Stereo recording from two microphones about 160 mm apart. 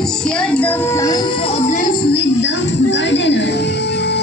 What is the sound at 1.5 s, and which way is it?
Music, 45° left (ahead or behind).